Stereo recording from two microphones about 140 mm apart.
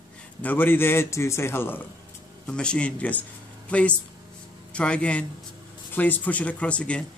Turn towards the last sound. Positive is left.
turn(degrees=10)  # may be behind; listen again after turning